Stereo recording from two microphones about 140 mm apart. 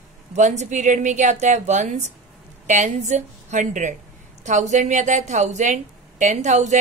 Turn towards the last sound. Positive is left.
turn(degrees=-55)  # may be behind; listen again after turning